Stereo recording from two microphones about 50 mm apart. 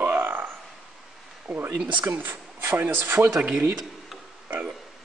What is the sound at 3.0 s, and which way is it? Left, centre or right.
Speech, right.